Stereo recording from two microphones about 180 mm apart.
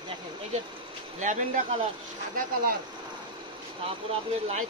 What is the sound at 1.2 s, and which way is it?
Speech, 45° right (ahead or behind).